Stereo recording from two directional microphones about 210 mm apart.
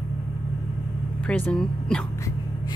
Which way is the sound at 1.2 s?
5° left (ahead or behind).